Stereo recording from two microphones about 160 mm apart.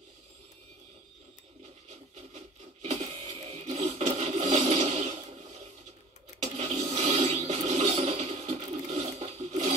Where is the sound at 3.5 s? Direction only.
40° right (ahead or behind).